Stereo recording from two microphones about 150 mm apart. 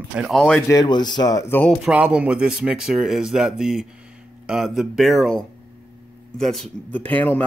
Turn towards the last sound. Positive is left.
turn(degrees=10)  # may be behind; listen again after turning